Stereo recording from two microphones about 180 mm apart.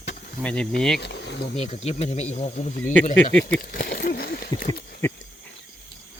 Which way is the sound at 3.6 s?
55° left (ahead or behind).